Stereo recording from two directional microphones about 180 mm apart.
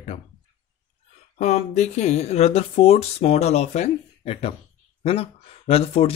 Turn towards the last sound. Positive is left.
turn(degrees=35)  # may be behind; listen again after turning